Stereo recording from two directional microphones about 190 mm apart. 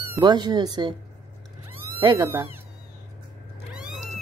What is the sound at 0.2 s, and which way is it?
Speech, 20° right (ahead or behind).